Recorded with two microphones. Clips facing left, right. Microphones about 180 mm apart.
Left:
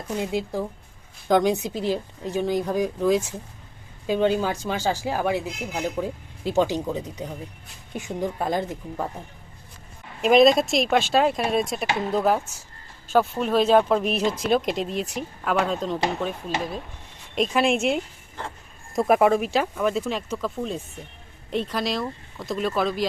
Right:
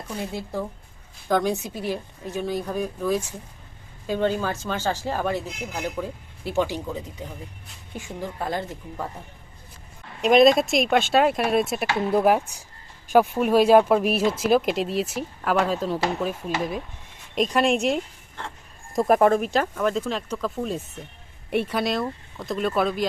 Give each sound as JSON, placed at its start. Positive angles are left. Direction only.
{"t": 0.2, "sound": "speech", "side_deg": 15}
{"t": 10.2, "sound": "speech", "side_deg": 0}
{"t": 17.3, "sound": "speech", "side_deg": 0}
{"t": 20.6, "sound": "speech", "side_deg": -5}